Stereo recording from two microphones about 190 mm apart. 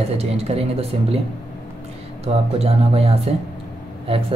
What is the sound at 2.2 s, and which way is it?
Speech, 30° right (ahead or behind).